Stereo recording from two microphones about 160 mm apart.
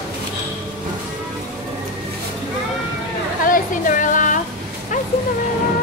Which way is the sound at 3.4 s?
60° left (ahead or behind).